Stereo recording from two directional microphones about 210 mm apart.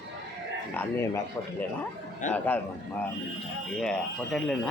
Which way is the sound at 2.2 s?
35° left (ahead or behind).